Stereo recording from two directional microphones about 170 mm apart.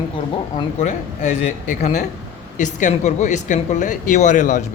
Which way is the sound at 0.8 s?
45° left (ahead or behind).